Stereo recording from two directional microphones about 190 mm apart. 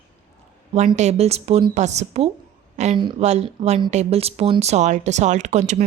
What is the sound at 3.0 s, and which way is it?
Speech, 25° right (ahead or behind).